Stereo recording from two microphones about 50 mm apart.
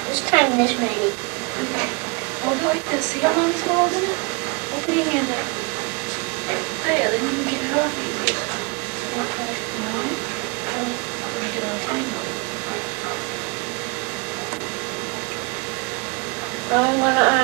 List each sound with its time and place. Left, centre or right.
0.1 s a woman's voice: right
2.4 s speech: right
6.5 s speech: right
16.7 s speech: right